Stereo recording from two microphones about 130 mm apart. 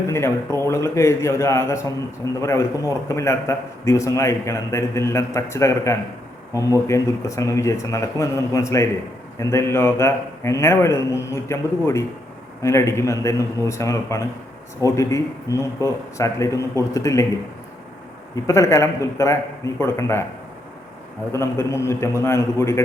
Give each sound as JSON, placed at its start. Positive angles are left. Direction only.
{"t": 0.1, "sound": "a man's voice", "side_deg": 20}
{"t": 18.4, "sound": "a man's voice", "side_deg": 25}
{"t": 21.3, "sound": "a man's voice", "side_deg": 20}